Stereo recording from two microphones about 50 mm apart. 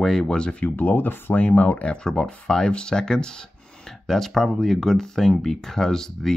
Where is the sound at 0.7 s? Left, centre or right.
Left.